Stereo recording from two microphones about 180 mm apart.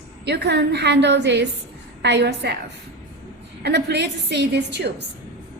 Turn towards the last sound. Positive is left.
turn(degrees=-70)  # may be behind; listen again after turning